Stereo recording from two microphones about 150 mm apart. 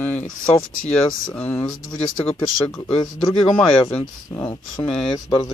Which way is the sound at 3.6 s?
10° left (ahead or behind).